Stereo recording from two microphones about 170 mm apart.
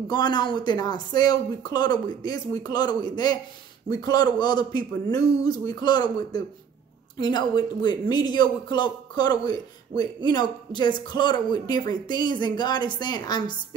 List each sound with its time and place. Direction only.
0.1 s a man's voice: 25° left (ahead or behind)